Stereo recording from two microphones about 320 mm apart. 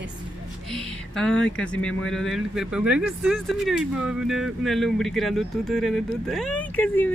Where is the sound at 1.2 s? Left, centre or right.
Centre.